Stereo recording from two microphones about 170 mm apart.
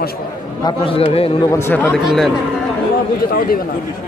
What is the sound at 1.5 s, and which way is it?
Speech, 15° left (ahead or behind).